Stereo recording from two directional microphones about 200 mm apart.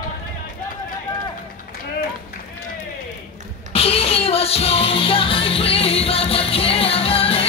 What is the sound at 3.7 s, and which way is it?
Music, 30° left (ahead or behind).